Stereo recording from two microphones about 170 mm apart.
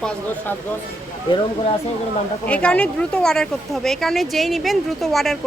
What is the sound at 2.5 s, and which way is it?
Speech, 5° left (ahead or behind).